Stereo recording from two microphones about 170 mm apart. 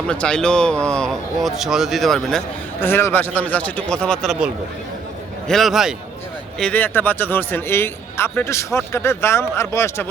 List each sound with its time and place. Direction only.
0.1 s speech: 5° left (ahead or behind)
2.8 s speech: 15° left (ahead or behind)